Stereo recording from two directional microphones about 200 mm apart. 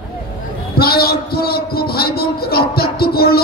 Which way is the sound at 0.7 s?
50° left (ahead or behind).